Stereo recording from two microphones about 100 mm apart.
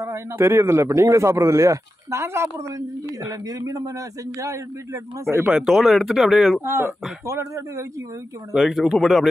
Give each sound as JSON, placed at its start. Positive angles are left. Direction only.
{"t": 0.0, "sound": "speech", "side_deg": -25}
{"t": 5.4, "sound": "speech", "side_deg": -10}
{"t": 6.6, "sound": "speech", "side_deg": -25}
{"t": 8.5, "sound": "speech", "side_deg": 0}